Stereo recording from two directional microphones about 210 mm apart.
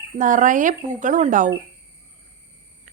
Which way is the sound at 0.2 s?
35° right (ahead or behind).